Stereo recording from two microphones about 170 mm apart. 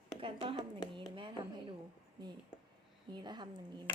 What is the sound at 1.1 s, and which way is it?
Speech, 30° right (ahead or behind).